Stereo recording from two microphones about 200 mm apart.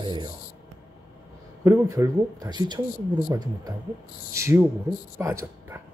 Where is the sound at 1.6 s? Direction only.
15° right (ahead or behind).